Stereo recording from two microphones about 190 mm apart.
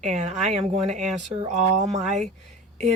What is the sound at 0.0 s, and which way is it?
Speech, 35° right (ahead or behind).